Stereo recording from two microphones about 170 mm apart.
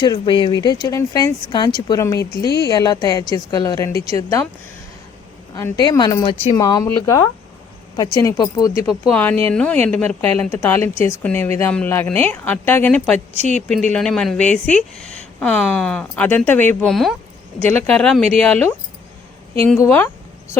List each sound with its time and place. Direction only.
0.0 s speech: 25° left (ahead or behind)
5.5 s speech: 20° left (ahead or behind); by 18.7 s 5° left (ahead or behind)
19.8 s speech: 10° left (ahead or behind)